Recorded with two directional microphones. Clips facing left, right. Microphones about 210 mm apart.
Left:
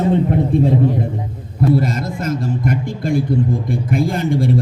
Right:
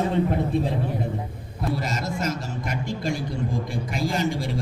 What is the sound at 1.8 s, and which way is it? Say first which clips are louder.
A man's voice: left 6 dB; 55° left (ahead or behind).